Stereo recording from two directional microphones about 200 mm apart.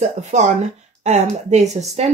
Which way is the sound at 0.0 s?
35° right (ahead or behind).